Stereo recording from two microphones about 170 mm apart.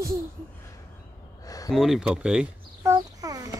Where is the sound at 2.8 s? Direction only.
20° right (ahead or behind).